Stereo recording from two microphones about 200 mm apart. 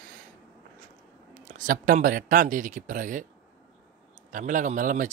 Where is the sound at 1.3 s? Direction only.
40° right (ahead or behind).